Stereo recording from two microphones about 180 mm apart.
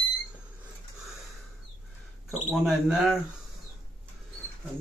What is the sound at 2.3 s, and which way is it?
Speech, centre (ahead or behind).